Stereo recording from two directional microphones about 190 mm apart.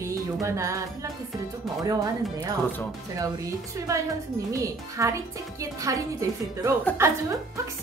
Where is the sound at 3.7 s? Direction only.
15° right (ahead or behind).